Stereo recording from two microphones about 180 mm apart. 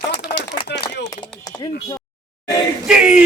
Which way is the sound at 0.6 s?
75° left (ahead or behind).